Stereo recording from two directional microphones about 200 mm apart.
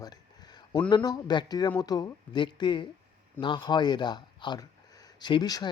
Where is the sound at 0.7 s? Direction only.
25° left (ahead or behind).